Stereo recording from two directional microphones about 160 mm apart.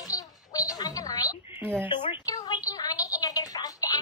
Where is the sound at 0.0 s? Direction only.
20° left (ahead or behind).